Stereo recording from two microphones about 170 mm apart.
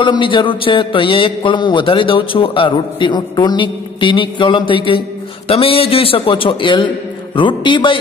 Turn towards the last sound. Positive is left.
turn(degrees=30)  # may be behind; listen again after turning